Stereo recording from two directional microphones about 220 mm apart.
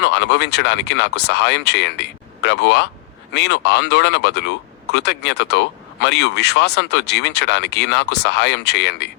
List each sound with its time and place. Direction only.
0.0 s speech: 50° left (ahead or behind)